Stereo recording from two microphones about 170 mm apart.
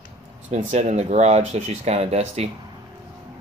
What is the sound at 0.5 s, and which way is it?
Speech, 40° right (ahead or behind).